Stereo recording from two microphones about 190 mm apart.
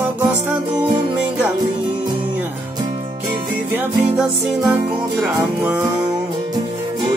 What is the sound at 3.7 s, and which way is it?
Music, 5° right (ahead or behind).